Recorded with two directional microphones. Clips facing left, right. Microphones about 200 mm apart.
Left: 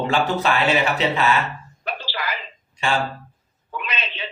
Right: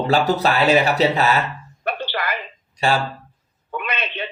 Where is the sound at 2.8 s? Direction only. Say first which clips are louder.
Right 4 dB; 40° right (ahead or behind).